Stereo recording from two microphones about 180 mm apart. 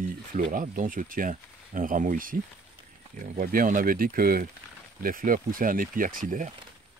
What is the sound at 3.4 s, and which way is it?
Speech, 50° right (ahead or behind).